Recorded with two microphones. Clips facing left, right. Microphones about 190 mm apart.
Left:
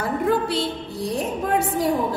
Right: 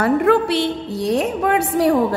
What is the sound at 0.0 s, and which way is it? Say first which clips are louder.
A woman's voice: right 6 dB; 70° right (ahead or behind).